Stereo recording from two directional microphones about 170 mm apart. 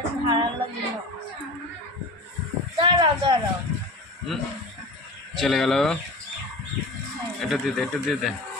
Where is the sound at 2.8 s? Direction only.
30° right (ahead or behind).